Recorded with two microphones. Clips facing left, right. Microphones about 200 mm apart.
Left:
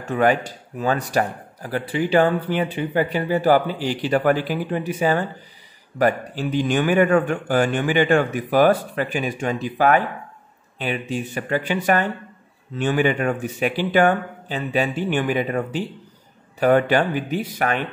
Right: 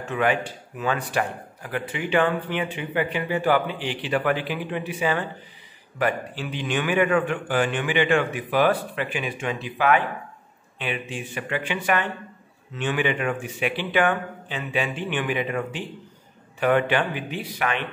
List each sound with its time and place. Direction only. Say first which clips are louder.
0.0 s speech: left 4 dB; 40° left (ahead or behind)